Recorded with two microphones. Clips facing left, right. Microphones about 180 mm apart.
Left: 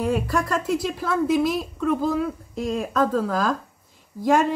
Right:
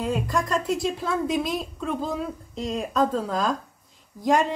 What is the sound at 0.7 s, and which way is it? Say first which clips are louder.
A woman's voice: left 1 dB; centre (ahead or behind).